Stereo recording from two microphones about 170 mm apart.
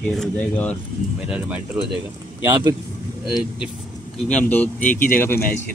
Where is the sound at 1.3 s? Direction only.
10° right (ahead or behind).